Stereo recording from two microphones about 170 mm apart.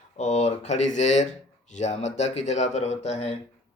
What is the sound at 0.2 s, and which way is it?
A man's voice, 40° left (ahead or behind).